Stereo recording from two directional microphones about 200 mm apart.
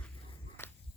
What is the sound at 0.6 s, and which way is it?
Walk, 10° left (ahead or behind).